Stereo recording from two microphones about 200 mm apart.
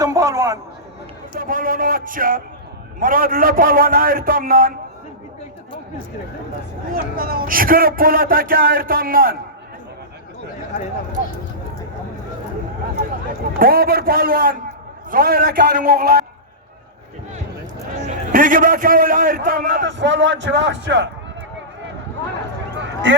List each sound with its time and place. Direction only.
0.0 s a sound: 15° right (ahead or behind)
1.4 s a man's voice: 45° right (ahead or behind)
6.9 s a man's voice: 45° right (ahead or behind)
13.6 s a man's voice: 45° right (ahead or behind)
18.3 s a man's voice: 45° right (ahead or behind)
19.8 s a man's voice: 65° right (ahead or behind)